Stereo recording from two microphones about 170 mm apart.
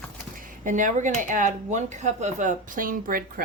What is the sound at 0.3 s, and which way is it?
Speech, 50° right (ahead or behind).